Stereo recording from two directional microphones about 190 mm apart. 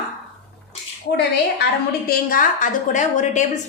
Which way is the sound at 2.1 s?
45° left (ahead or behind).